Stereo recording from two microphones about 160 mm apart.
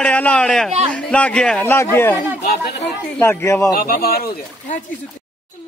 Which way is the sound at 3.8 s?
70° left (ahead or behind).